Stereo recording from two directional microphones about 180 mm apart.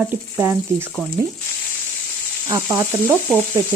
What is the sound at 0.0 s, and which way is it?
Frying, 10° right (ahead or behind).